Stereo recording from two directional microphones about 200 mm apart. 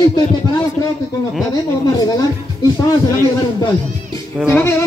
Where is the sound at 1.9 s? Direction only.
20° left (ahead or behind).